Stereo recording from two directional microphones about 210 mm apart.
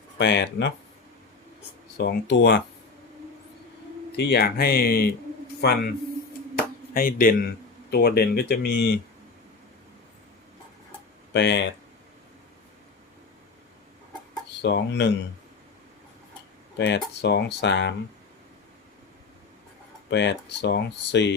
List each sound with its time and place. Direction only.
0.2 s speech: 55° left (ahead or behind)
2.0 s speech: 55° left (ahead or behind)
4.2 s a man's voice: 50° left (ahead or behind)
11.3 s speech: 55° left (ahead or behind)
14.6 s speech: 55° left (ahead or behind)
16.7 s speech: 55° left (ahead or behind)
20.1 s speech: 55° left (ahead or behind)